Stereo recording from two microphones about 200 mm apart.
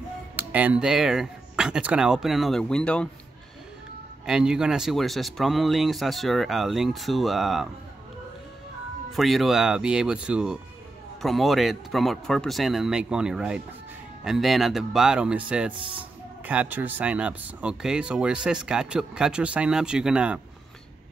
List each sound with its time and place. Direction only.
0.4 s speech: 10° right (ahead or behind)
4.3 s speech: 5° right (ahead or behind)
9.1 s speech: centre (ahead or behind)
15.7 s speech: 25° right (ahead or behind)
16.0 s speech: 10° right (ahead or behind)